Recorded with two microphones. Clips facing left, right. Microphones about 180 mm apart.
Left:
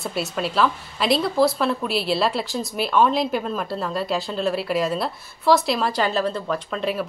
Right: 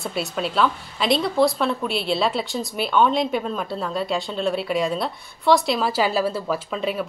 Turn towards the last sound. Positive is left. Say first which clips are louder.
# even
turn(degrees=0)  # may be behind; listen again after turning